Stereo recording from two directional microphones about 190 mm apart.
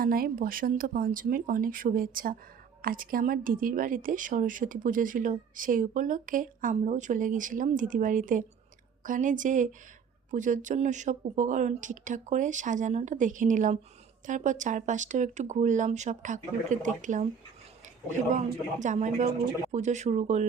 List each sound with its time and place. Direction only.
0.0 s a woman's voice: 50° right (ahead or behind)